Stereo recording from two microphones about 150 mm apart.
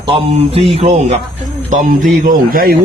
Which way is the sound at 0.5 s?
45° right (ahead or behind).